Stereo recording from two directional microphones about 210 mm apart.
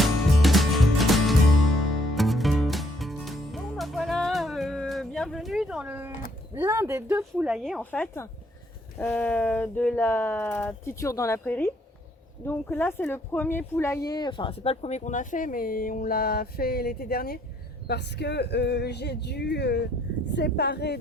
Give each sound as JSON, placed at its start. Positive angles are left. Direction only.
{"t": 0.0, "sound": "music", "side_deg": 0}
{"t": 6.5, "sound": "speech", "side_deg": -10}